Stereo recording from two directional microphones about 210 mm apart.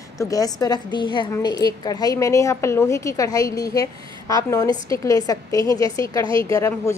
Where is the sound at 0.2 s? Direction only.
15° left (ahead or behind).